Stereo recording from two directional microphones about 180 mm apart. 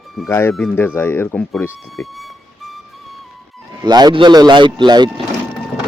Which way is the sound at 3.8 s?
25° right (ahead or behind).